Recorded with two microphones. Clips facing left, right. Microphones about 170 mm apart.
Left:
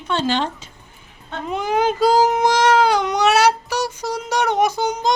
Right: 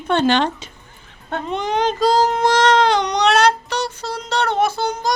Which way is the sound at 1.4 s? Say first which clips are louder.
Left 1 dB; 5° left (ahead or behind).